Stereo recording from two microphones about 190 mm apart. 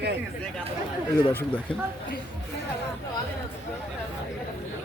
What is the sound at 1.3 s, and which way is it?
Speech, 10° left (ahead or behind).